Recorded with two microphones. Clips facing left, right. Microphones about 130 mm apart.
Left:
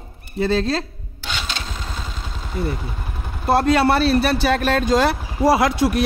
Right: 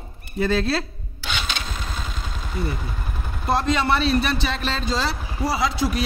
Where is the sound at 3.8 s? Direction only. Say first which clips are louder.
Left 4 dB; 45° left (ahead or behind).